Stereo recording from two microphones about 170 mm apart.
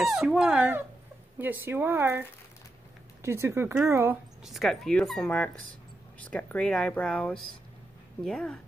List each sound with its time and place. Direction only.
0.0 s speech: centre (ahead or behind)
4.5 s speech: centre (ahead or behind)